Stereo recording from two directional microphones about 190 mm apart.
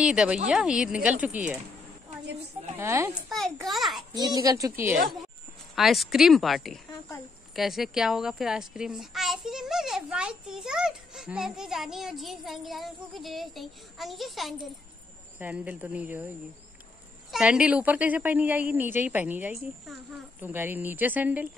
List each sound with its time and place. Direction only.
0.0 s a child's voice: 5° right (ahead or behind)
2.8 s a woman's voice: 15° right (ahead or behind)
3.3 s a child's voice: centre (ahead or behind)
4.1 s a woman's voice: 20° right (ahead or behind)
5.8 s a child's voice: centre (ahead or behind)